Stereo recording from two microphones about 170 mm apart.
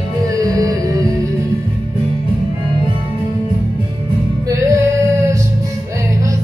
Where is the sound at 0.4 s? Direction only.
20° right (ahead or behind).